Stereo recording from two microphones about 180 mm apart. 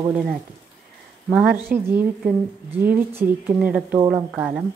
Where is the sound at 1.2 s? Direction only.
10° right (ahead or behind).